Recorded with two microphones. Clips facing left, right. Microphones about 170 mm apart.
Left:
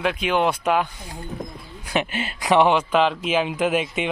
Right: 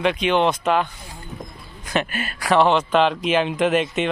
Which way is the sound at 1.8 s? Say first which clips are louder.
Right 1 dB; 10° left (ahead or behind).